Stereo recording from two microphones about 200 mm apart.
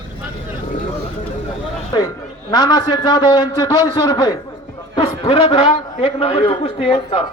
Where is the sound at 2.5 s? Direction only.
20° left (ahead or behind).